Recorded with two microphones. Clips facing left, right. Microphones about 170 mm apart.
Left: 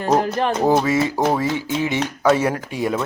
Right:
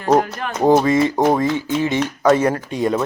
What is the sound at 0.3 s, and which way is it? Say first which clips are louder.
Speech: left 7 dB; 30° left (ahead or behind).